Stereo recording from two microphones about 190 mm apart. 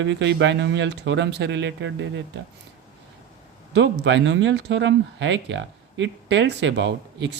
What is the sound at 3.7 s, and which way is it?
Speech, 70° right (ahead or behind).